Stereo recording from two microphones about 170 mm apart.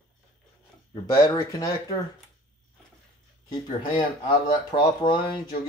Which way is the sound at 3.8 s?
30° left (ahead or behind).